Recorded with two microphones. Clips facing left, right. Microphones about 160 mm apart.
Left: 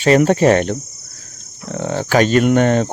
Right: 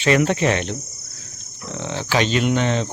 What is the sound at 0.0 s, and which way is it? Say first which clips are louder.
Speech: left 6 dB; 45° left (ahead or behind).